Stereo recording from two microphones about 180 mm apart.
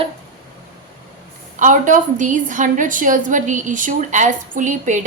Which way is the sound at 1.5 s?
45° right (ahead or behind).